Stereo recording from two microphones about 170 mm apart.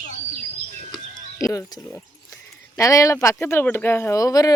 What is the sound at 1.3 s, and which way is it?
Speech, 20° left (ahead or behind).